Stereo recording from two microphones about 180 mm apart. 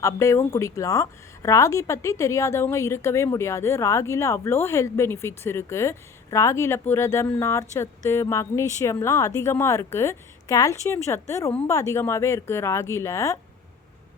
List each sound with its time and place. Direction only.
0.0 s a woman's voice: 15° left (ahead or behind)